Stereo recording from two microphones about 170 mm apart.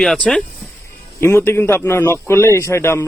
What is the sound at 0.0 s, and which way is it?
A man's voice, 5° left (ahead or behind).